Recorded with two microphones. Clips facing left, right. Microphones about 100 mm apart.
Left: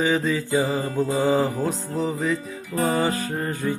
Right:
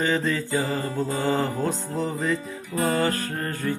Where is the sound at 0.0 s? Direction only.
5° left (ahead or behind).